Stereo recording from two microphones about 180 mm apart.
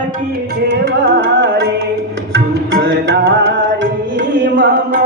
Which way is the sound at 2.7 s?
80° right.